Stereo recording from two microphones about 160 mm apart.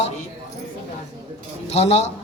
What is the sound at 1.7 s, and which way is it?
Speech, 40° left (ahead or behind).